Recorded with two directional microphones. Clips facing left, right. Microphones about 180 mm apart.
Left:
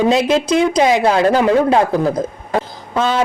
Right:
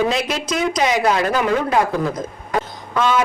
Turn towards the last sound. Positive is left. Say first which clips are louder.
# left 2 dB
turn(degrees=30)  # may be behind; listen again after turning